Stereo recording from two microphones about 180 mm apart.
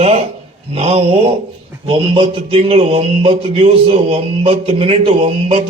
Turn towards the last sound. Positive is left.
turn(degrees=-30)  # may be behind; listen again after turning